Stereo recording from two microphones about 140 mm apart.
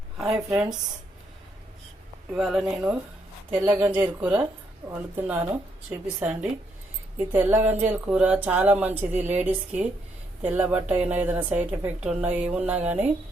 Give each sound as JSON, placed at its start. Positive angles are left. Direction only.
{"t": 0.5, "sound": "speech", "side_deg": -5}
{"t": 2.3, "sound": "speech", "side_deg": -5}
{"t": 3.7, "sound": "a woman's voice", "side_deg": -15}